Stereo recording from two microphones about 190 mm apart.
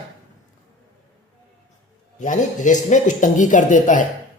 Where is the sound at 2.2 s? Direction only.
40° left (ahead or behind).